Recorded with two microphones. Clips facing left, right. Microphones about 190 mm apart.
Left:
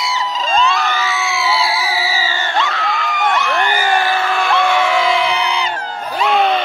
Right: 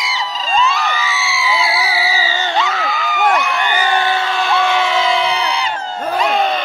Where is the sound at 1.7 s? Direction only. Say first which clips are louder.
Right 1 dB; 40° left (ahead or behind).